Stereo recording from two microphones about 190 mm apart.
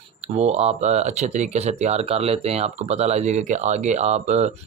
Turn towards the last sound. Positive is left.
turn(degrees=-35)  # may be behind; listen again after turning